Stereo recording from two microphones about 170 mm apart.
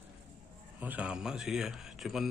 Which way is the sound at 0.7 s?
10° right (ahead or behind).